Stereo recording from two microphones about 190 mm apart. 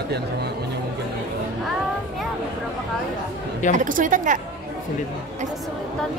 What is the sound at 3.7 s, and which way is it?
Speech, 45° right (ahead or behind).